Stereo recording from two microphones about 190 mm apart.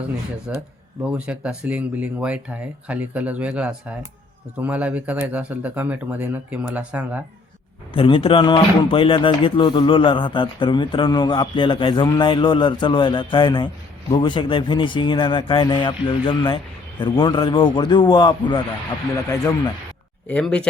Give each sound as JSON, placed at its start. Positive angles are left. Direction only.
{"t": 0.5, "sound": "speech", "side_deg": -10}
{"t": 7.9, "sound": "speech", "side_deg": 25}
{"t": 20.2, "sound": "speech", "side_deg": 5}